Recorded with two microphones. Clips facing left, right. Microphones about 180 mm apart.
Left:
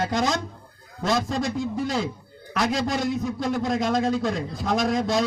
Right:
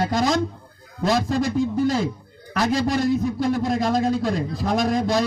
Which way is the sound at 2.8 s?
Centre (ahead or behind).